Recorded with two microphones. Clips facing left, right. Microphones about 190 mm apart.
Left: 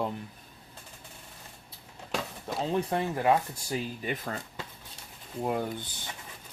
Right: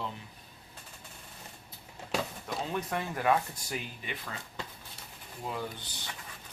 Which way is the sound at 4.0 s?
45° left (ahead or behind).